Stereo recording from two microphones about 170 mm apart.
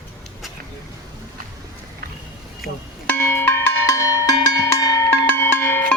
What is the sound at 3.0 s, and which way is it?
Music, 10° left (ahead or behind).